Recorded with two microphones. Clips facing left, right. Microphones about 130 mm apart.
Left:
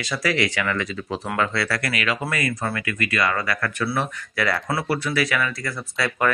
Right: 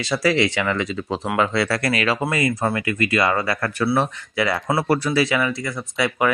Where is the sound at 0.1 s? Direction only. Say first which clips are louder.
Right 4 dB; 30° right (ahead or behind).